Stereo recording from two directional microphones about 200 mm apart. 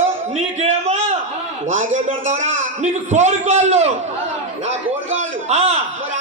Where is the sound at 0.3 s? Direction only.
30° right (ahead or behind).